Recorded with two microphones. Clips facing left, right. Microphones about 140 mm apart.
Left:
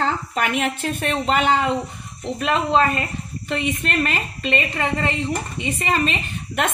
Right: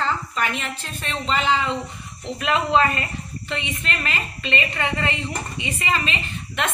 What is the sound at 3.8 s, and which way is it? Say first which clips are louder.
Speech: left 5 dB; 45° left (ahead or behind).